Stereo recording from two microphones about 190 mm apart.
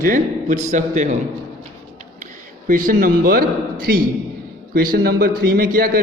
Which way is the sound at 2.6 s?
45° right (ahead or behind).